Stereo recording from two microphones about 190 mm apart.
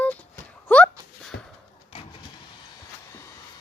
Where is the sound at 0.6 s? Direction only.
5° left (ahead or behind).